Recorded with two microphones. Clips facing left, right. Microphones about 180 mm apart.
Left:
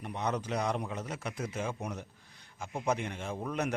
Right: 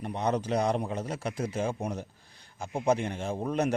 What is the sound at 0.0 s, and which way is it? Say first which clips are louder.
A man's voice: right 5 dB; 35° right (ahead or behind).